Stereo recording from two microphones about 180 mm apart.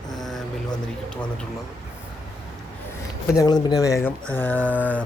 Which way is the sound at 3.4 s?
20° left (ahead or behind).